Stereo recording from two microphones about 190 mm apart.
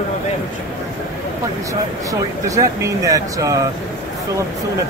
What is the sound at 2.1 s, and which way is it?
Speech, 15° right (ahead or behind).